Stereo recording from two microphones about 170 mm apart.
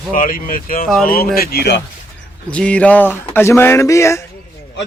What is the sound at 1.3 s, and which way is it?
Speech, 70° left (ahead or behind).